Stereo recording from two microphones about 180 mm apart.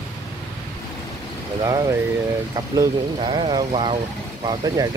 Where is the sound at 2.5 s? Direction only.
25° right (ahead or behind).